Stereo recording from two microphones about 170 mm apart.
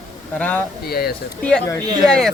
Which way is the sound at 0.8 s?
65° left (ahead or behind).